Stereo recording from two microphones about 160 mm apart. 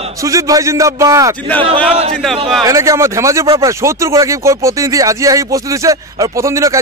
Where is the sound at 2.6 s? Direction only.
20° right (ahead or behind).